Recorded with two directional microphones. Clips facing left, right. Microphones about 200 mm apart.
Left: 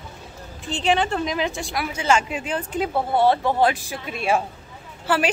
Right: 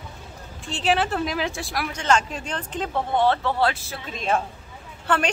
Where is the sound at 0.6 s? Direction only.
Centre (ahead or behind).